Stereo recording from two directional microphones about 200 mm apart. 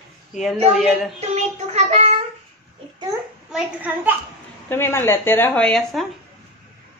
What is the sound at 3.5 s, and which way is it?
Speech, 10° right (ahead or behind).